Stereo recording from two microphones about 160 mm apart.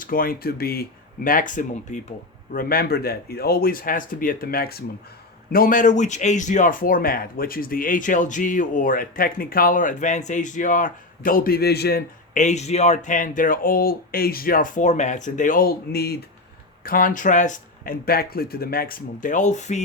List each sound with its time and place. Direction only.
0.0 s speech: 65° left (ahead or behind)
2.5 s speech: 65° left (ahead or behind); by 12.0 s 80° left
12.3 s speech: 50° left (ahead or behind); by 16.1 s 85° left
16.8 s speech: 60° left (ahead or behind); by 19.8 s 45° left (ahead or behind)